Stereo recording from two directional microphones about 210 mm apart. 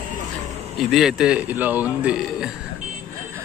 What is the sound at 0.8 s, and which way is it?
A man's voice, centre (ahead or behind).